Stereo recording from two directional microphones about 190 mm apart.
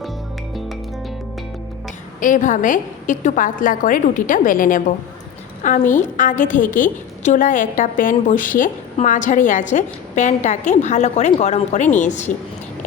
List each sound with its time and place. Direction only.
2.2 s a woman's voice: 40° left (ahead or behind)